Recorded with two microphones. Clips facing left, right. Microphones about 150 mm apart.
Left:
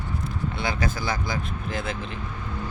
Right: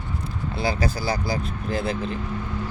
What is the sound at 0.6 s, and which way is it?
Speech, 35° right (ahead or behind).